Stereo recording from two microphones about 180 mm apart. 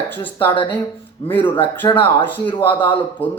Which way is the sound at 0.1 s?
10° left (ahead or behind).